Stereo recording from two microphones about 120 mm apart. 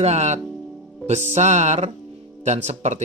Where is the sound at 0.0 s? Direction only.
70° right (ahead or behind).